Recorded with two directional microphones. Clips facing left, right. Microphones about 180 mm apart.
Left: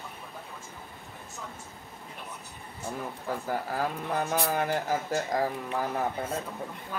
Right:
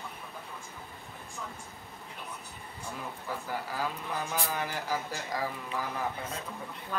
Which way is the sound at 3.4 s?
50° left (ahead or behind).